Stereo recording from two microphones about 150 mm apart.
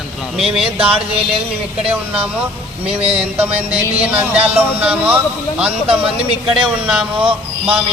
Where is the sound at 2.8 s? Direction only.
40° right (ahead or behind).